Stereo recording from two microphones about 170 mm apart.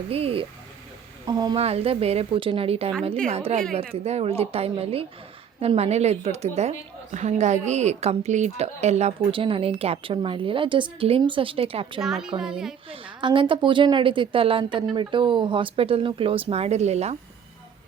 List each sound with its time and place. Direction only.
0.1 s a woman's voice: 35° right (ahead or behind)
1.3 s speech: 25° right (ahead or behind)
1.5 s a woman's voice: 35° right (ahead or behind)
12.0 s speech: centre (ahead or behind)
12.9 s a woman's voice: 30° right (ahead or behind)